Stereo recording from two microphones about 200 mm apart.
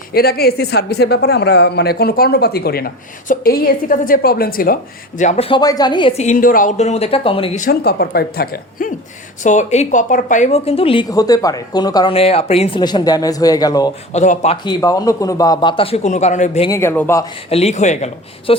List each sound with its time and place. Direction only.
0.1 s speech: 50° left (ahead or behind); by 7.6 s 25° left (ahead or behind)
7.6 s speech: 50° left (ahead or behind)
9.4 s a woman's voice: 35° left (ahead or behind)
11.1 s speech: 20° left (ahead or behind)
14.1 s speech: 35° left (ahead or behind)
16.6 s speech: 15° left (ahead or behind)
17.5 s a woman's voice: 30° left (ahead or behind)